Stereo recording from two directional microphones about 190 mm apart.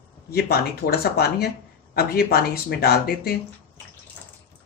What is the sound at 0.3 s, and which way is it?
A woman's voice, 55° left (ahead or behind).